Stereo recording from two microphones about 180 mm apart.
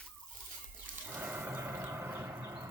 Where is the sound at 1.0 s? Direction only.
10° right (ahead or behind).